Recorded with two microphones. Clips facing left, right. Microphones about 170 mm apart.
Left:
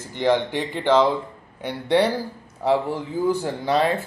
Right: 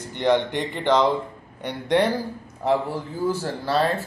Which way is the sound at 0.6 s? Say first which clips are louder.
Left 2 dB; 10° left (ahead or behind).